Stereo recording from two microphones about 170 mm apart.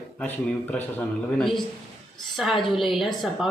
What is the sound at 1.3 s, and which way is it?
A woman's voice, centre (ahead or behind).